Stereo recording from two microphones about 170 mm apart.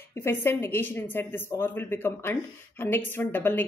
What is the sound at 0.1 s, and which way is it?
A woman's voice, 15° left (ahead or behind).